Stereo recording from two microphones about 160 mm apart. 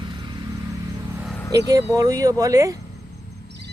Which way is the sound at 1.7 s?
20° right (ahead or behind).